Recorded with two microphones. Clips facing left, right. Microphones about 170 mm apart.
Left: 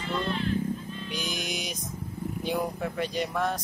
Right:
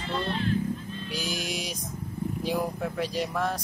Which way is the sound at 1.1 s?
5° right (ahead or behind).